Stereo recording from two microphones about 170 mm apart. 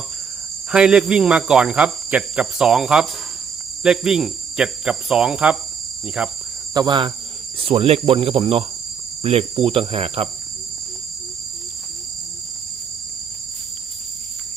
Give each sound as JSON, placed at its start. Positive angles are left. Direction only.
{"t": 0.7, "sound": "speech", "side_deg": -5}
{"t": 6.7, "sound": "cricket", "side_deg": -25}